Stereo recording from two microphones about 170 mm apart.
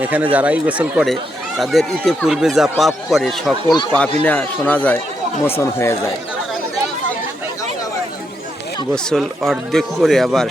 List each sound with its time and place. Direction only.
0.0 s a man's voice: 10° right (ahead or behind); by 6.1 s 15° left (ahead or behind)
9.0 s speech: centre (ahead or behind)